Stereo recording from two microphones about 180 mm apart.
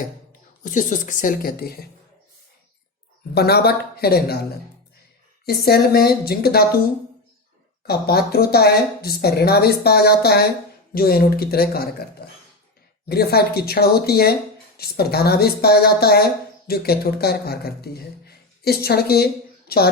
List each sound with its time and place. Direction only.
0.6 s speech: 45° left (ahead or behind)
3.3 s speech: 65° left (ahead or behind)
5.5 s speech: 60° left (ahead or behind)
7.9 s speech: 60° left (ahead or behind)
13.1 s speech: 60° left (ahead or behind)